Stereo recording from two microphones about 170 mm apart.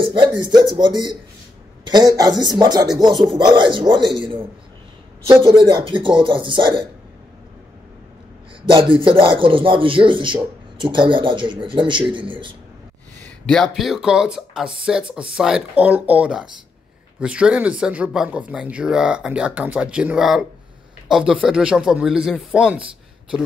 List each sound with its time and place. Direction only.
0.0 s speech: 25° right (ahead or behind)
8.7 s speech: 30° right (ahead or behind)
13.5 s speech: centre (ahead or behind)